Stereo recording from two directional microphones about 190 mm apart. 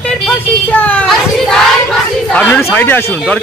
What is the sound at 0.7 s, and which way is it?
Child singing, 10° left (ahead or behind).